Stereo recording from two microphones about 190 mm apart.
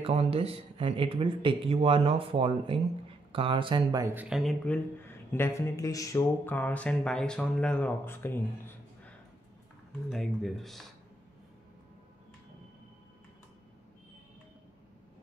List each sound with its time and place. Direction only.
0.0 s speech: 30° right (ahead or behind)
4.1 s speech: 5° right (ahead or behind)
5.0 s a sound: 10° left (ahead or behind)
10.0 s speech: centre (ahead or behind)